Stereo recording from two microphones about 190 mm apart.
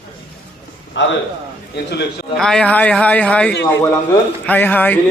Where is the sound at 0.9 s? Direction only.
75° left (ahead or behind).